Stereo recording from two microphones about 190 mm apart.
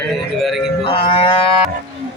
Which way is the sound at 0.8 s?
30° left (ahead or behind).